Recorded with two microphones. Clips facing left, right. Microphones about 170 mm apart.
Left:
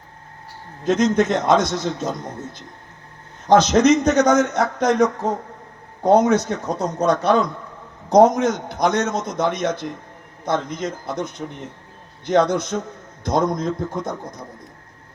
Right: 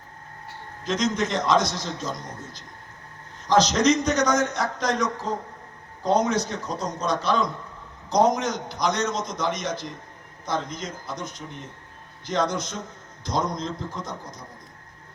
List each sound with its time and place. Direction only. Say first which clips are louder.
0.9 s a man's voice: left 8 dB; 60° left (ahead or behind)